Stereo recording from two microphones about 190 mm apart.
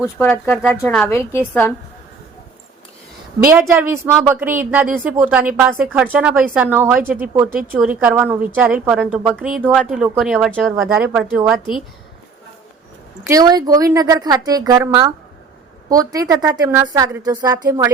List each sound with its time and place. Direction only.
0.2 s a woman's voice: 10° left (ahead or behind)
3.4 s speech: 15° right (ahead or behind)
13.2 s a woman's voice: 20° right (ahead or behind)